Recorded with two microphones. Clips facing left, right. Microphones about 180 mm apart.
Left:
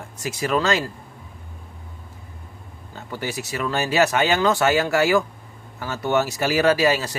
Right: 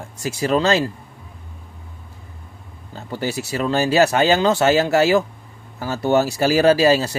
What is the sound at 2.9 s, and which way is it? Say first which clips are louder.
Speech: right 4 dB; 30° right (ahead or behind).